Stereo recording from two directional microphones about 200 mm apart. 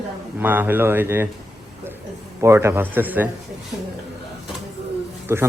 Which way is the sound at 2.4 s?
15° right (ahead or behind).